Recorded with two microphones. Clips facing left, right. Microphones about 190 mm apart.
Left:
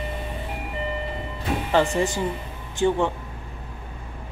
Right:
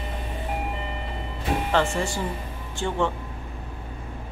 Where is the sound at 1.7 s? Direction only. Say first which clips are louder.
Left 5 dB; 15° left (ahead or behind).